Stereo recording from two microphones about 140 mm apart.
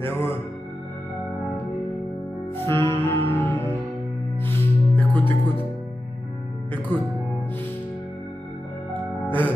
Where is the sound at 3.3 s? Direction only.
15° left (ahead or behind).